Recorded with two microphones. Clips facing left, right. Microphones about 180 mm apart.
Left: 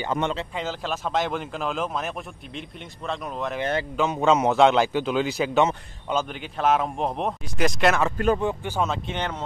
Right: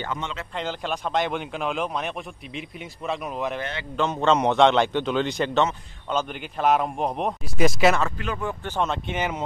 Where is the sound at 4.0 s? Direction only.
10° left (ahead or behind).